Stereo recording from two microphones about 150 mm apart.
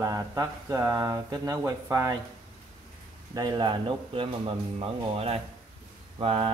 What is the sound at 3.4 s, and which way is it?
Speech, 25° right (ahead or behind).